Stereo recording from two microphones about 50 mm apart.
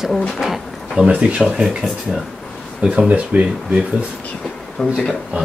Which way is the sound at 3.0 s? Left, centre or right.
Right.